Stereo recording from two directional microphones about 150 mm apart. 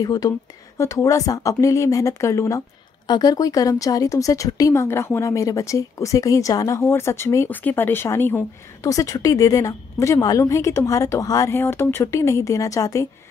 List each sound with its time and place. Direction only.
0.0 s speech: 25° left (ahead or behind)